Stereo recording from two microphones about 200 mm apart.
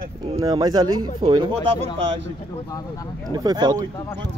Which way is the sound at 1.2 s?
25° right (ahead or behind).